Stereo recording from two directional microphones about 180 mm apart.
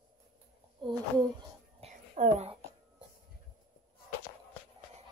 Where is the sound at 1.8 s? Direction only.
40° right (ahead or behind).